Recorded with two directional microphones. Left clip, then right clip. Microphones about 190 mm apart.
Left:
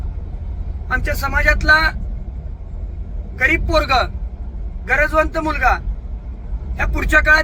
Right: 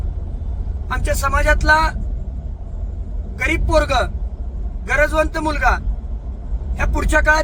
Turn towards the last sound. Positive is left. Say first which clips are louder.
# left 3 dB
turn(degrees=-10)  # may be behind; listen again after turning